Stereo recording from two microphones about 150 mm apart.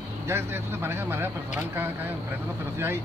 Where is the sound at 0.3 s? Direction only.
15° right (ahead or behind).